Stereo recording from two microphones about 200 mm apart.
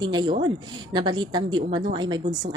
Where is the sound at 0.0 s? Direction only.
20° right (ahead or behind).